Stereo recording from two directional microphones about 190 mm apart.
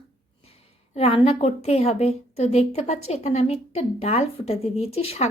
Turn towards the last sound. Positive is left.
turn(degrees=30)  # may be behind; listen again after turning